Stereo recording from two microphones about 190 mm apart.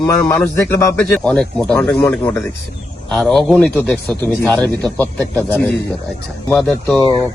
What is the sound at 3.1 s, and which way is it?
A man's voice, centre (ahead or behind).